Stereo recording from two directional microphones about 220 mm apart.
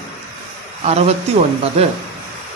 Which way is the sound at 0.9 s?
30° right (ahead or behind).